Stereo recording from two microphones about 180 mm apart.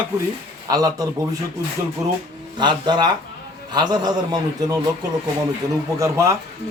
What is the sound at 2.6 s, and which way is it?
Speech, 25° right (ahead or behind).